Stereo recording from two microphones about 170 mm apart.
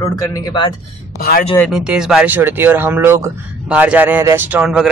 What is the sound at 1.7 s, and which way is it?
Speech, 5° right (ahead or behind).